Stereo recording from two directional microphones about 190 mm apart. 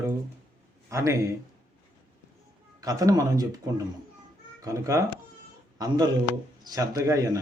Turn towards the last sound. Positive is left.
turn(degrees=-20)  # may be behind; listen again after turning